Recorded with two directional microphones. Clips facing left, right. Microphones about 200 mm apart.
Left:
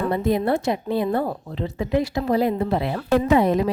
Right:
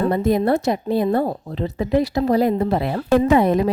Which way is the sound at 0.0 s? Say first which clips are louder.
Right 3 dB; 40° right (ahead or behind).